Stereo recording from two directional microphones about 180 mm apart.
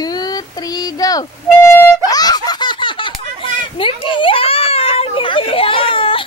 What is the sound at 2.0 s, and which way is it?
Laughter, 20° left (ahead or behind).